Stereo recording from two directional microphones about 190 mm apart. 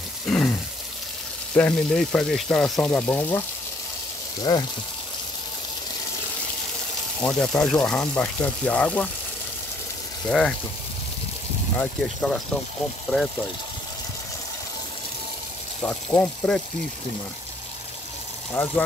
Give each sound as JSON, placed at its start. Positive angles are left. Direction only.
{"t": 0.3, "sound": "a sound", "side_deg": 5}
{"t": 1.5, "sound": "speech", "side_deg": 5}
{"t": 4.4, "sound": "speech", "side_deg": 20}
{"t": 7.2, "sound": "speech", "side_deg": 5}
{"t": 11.7, "sound": "speech", "side_deg": 5}
{"t": 15.8, "sound": "speech", "side_deg": 10}
{"t": 18.6, "sound": "speech", "side_deg": 10}